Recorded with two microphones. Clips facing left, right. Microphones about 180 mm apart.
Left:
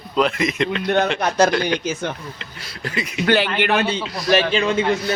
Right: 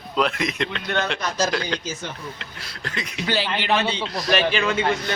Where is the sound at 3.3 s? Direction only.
60° left (ahead or behind).